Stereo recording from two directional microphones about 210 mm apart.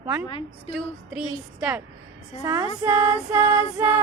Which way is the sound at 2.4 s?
15° right (ahead or behind).